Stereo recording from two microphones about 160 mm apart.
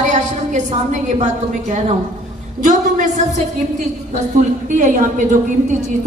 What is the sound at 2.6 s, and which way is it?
Speech, 50° right (ahead or behind).